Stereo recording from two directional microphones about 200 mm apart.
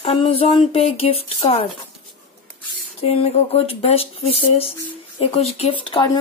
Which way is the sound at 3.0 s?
30° left (ahead or behind).